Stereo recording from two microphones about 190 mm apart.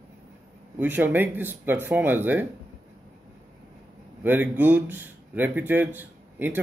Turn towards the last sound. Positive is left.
turn(degrees=-10)  # may be behind; listen again after turning